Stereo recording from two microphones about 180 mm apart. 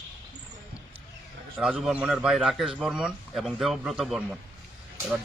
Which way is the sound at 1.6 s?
5° right (ahead or behind).